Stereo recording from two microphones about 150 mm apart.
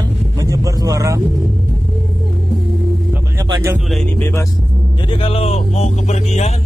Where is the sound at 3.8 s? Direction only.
5° left (ahead or behind).